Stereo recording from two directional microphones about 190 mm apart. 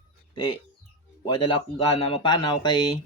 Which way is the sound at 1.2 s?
25° left (ahead or behind).